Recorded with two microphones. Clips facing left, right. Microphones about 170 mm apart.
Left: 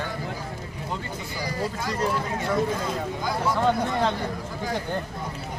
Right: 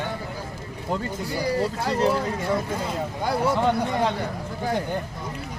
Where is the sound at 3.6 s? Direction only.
15° right (ahead or behind).